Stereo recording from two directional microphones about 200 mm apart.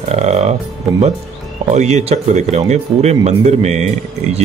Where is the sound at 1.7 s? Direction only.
35° right (ahead or behind).